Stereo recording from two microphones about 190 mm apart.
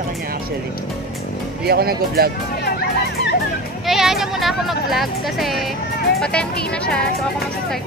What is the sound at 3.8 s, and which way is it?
Speech, centre (ahead or behind).